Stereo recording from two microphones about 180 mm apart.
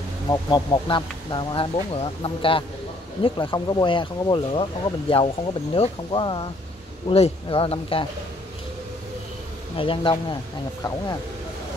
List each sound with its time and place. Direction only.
0.3 s speech: 25° left (ahead or behind)
9.8 s speech: 30° left (ahead or behind)